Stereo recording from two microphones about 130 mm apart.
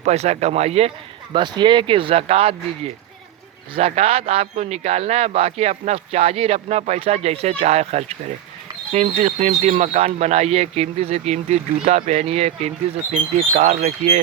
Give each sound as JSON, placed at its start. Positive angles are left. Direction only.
{"t": 0.0, "sound": "speech", "side_deg": -55}
{"t": 1.3, "sound": "a man's voice", "side_deg": -35}